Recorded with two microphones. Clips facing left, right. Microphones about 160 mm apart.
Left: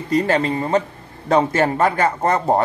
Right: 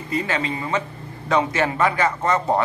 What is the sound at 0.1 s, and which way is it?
Speech, 40° left (ahead or behind).